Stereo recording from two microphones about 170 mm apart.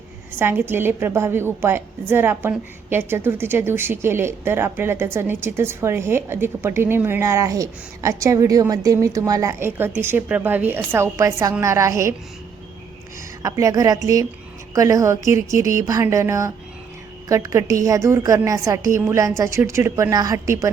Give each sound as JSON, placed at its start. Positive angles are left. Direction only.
{"t": 0.3, "sound": "a woman's voice", "side_deg": -10}
{"t": 13.4, "sound": "a woman's voice", "side_deg": -20}